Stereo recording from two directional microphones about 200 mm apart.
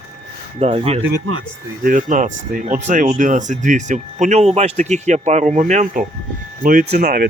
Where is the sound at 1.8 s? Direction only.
40° right (ahead or behind).